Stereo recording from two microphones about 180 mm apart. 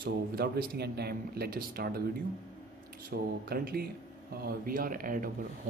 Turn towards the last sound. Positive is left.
turn(degrees=-50)  # may be behind; listen again after turning